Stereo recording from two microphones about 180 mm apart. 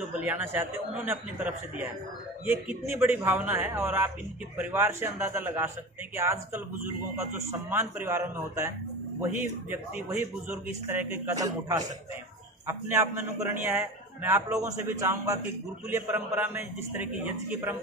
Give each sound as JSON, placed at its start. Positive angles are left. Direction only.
{"t": 0.2, "sound": "a man's voice", "side_deg": -10}